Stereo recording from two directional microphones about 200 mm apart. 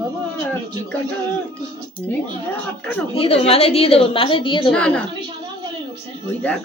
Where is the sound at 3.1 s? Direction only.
30° left (ahead or behind).